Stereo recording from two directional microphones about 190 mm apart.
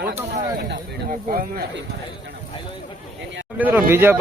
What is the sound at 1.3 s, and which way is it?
Speech, 45° right (ahead or behind).